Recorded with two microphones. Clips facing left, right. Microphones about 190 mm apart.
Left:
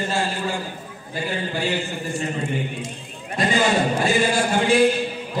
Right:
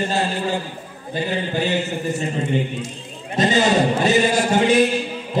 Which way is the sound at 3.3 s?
20° right (ahead or behind).